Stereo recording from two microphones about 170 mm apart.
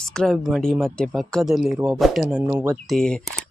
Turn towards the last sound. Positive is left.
turn(degrees=5)  # may be behind; listen again after turning